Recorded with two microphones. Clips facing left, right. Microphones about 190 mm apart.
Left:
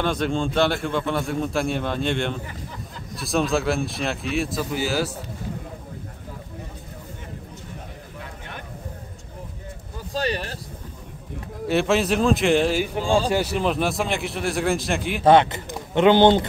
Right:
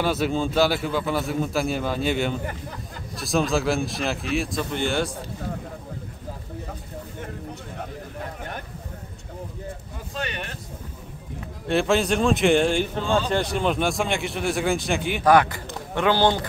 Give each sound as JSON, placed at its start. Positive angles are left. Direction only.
{"t": 0.0, "sound": "a man's voice", "side_deg": -5}
{"t": 10.1, "sound": "vehicle", "side_deg": 35}
{"t": 11.6, "sound": "a man's voice", "side_deg": 0}
{"t": 15.2, "sound": "speech", "side_deg": 25}